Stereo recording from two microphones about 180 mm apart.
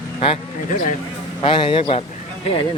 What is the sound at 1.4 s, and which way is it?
Speech, 30° left (ahead or behind).